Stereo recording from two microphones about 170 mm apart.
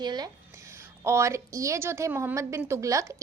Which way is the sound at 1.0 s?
15° right (ahead or behind).